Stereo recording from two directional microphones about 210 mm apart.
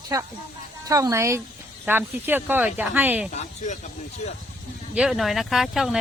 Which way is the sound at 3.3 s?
35° left (ahead or behind).